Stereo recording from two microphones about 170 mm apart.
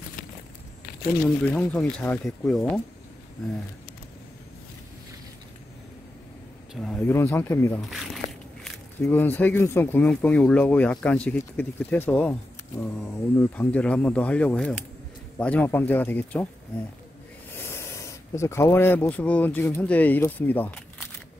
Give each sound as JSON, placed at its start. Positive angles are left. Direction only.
{"t": 1.2, "sound": "speech", "side_deg": 10}
{"t": 6.7, "sound": "speech", "side_deg": 5}
{"t": 7.9, "sound": "a sound", "side_deg": 0}
{"t": 9.1, "sound": "speech", "side_deg": 10}
{"t": 13.4, "sound": "speech", "side_deg": 10}
{"t": 17.6, "sound": "speech", "side_deg": 15}